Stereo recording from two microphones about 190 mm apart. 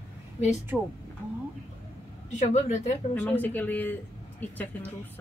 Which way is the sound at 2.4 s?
40° left (ahead or behind).